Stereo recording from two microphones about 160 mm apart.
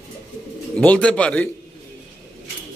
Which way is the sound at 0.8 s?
10° left (ahead or behind).